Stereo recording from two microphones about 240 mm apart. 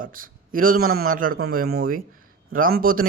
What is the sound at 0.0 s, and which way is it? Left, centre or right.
Speech, right.